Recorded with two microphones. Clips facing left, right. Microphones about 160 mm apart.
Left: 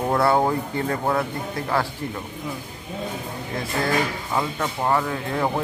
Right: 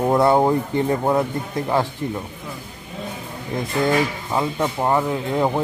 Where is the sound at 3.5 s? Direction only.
20° right (ahead or behind).